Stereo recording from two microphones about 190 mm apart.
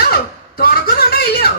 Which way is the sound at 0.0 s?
55° left (ahead or behind).